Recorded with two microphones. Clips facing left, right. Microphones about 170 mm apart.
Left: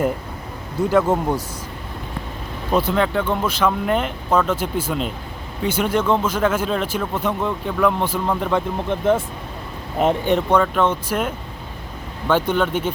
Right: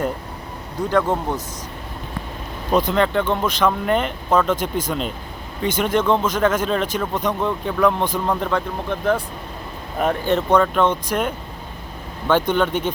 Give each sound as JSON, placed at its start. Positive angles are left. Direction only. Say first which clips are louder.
{"t": 0.8, "sound": "speech", "louder": "left 2 dB", "side_deg": 10}
{"t": 2.7, "sound": "speech", "louder": "right 1 dB", "side_deg": 5}
{"t": 8.5, "sound": "speech", "louder": "left 2 dB", "side_deg": 20}
{"t": 12.3, "sound": "speech", "louder": "right 1 dB", "side_deg": 5}